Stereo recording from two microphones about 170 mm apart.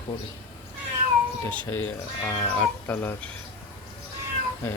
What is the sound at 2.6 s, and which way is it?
Speech, 10° left (ahead or behind).